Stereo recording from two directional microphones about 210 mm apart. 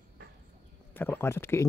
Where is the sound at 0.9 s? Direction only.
10° left (ahead or behind).